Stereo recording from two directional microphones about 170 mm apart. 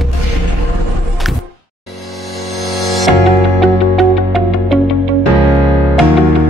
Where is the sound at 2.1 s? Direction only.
Centre (ahead or behind).